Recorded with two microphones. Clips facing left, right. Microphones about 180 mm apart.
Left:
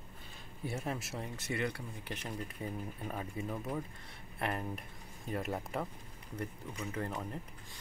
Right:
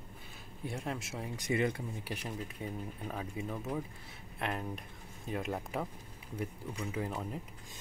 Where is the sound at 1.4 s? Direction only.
20° right (ahead or behind).